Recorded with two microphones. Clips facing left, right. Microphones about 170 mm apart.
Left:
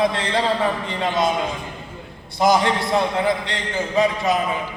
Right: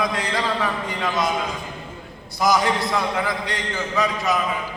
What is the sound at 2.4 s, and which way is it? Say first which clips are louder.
A man's voice: left 2 dB; 25° left (ahead or behind).